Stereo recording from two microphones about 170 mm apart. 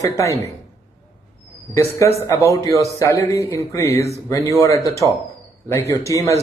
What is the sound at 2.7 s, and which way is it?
Speech, 20° right (ahead or behind).